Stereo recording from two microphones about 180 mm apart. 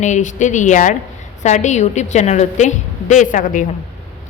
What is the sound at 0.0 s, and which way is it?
A woman's voice, 45° left (ahead or behind).